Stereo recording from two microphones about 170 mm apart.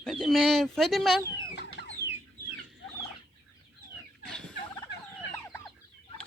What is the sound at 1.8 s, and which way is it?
Chicken, 90° right.